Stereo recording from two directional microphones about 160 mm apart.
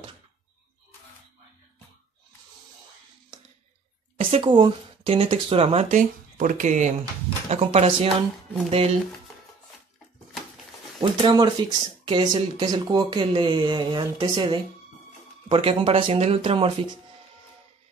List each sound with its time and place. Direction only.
4.2 s speech: 35° right (ahead or behind)
5.9 s speech: 55° right (ahead or behind); by 8.9 s 35° right (ahead or behind)
11.0 s speech: 30° right (ahead or behind)